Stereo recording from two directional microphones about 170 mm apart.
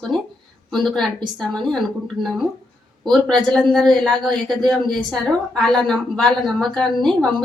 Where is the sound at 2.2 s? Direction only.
30° right (ahead or behind).